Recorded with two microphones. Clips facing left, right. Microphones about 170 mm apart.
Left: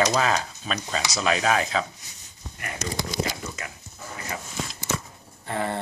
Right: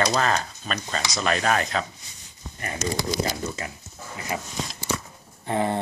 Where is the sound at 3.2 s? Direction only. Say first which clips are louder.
Right 2 dB; 30° right (ahead or behind).